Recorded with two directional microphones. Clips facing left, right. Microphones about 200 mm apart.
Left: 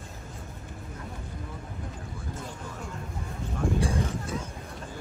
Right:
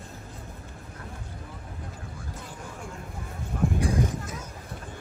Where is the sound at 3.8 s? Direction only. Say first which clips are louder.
Right 2 dB; 30° left (ahead or behind).